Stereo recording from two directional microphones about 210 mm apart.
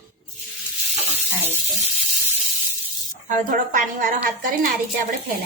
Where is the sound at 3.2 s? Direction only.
40° right (ahead or behind).